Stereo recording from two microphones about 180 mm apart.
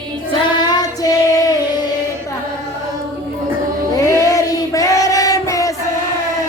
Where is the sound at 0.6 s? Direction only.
20° left (ahead or behind).